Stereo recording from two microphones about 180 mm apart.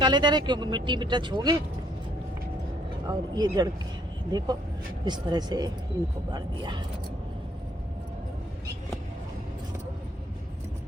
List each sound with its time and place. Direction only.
0.0 s speech: 25° right (ahead or behind)
3.1 s speech: 20° right (ahead or behind)